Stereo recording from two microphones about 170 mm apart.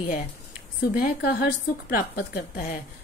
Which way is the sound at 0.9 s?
60° left (ahead or behind).